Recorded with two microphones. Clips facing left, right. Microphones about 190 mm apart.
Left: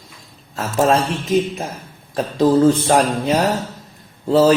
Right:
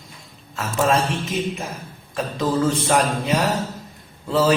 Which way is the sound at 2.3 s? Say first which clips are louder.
Left 8 dB; 35° left (ahead or behind).